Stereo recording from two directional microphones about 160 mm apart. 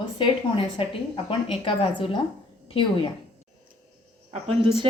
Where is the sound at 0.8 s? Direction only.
30° left (ahead or behind).